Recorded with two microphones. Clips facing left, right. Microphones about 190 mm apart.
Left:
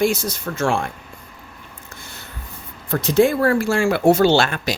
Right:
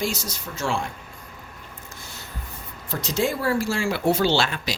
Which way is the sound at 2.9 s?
55° left (ahead or behind).